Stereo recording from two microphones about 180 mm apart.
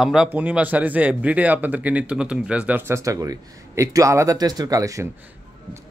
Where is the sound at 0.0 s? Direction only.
5° right (ahead or behind).